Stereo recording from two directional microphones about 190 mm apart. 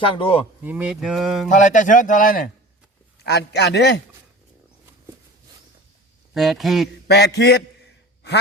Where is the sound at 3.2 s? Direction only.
60° left (ahead or behind).